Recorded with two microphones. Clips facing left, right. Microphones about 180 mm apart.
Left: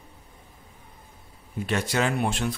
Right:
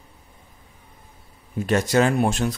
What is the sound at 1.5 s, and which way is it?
Speech, 45° right (ahead or behind).